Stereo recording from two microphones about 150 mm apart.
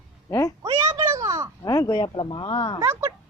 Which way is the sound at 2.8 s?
20° right (ahead or behind).